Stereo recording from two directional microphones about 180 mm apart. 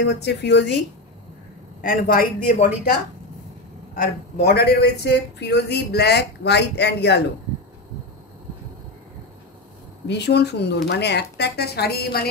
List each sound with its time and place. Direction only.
0.0 s speech: 70° left (ahead or behind)
1.8 s a woman's voice: 55° left (ahead or behind)
3.9 s speech: 55° left (ahead or behind)
10.0 s speech: 70° left (ahead or behind)